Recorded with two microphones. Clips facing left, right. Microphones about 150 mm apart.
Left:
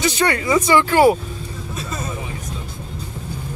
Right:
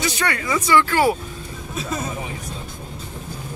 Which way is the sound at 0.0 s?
25° left (ahead or behind).